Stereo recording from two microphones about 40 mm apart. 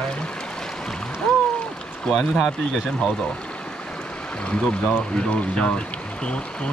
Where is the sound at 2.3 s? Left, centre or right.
Centre.